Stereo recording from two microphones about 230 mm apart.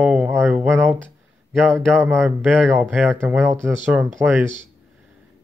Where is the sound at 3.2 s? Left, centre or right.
Centre.